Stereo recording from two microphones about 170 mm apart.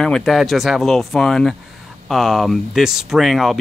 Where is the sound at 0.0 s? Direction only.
Centre (ahead or behind).